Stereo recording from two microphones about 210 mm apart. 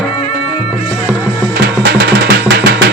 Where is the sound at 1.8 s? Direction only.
50° right (ahead or behind).